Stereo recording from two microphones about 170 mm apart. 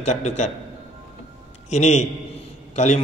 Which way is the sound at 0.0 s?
45° left (ahead or behind).